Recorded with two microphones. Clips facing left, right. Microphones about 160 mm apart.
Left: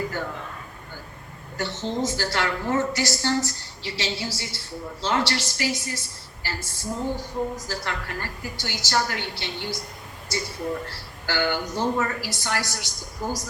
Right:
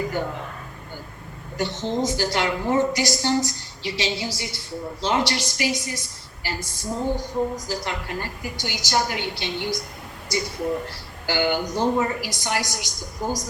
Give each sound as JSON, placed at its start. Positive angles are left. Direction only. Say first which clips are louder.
{"t": 0.1, "sound": "a woman's voice", "louder": "right 4 dB", "side_deg": -15}
{"t": 1.5, "sound": "a woman's voice", "louder": "right 3 dB", "side_deg": -15}